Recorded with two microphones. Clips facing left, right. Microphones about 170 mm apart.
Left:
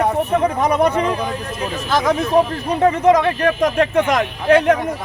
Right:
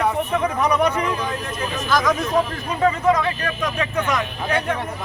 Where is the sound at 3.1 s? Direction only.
60° left (ahead or behind).